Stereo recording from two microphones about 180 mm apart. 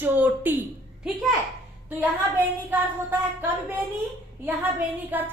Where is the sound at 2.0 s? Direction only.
10° right (ahead or behind).